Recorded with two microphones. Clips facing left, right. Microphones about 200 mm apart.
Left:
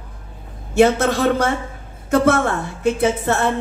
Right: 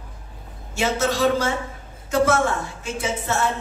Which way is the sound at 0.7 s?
60° left (ahead or behind).